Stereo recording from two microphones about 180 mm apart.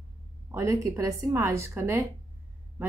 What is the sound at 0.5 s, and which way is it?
Speech, 20° right (ahead or behind).